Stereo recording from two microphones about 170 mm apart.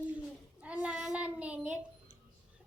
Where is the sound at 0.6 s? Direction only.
5° right (ahead or behind).